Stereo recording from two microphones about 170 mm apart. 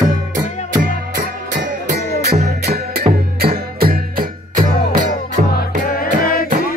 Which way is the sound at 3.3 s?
65° right (ahead or behind).